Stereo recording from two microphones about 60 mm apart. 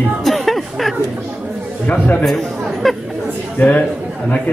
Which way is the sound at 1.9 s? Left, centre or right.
Left.